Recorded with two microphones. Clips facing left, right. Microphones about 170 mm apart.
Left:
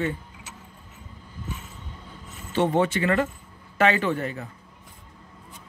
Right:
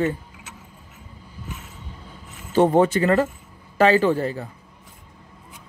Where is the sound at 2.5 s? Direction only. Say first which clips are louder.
Right 6 dB; 40° right (ahead or behind).